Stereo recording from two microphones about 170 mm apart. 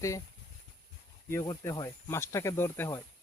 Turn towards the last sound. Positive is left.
turn(degrees=15)  # may be behind; listen again after turning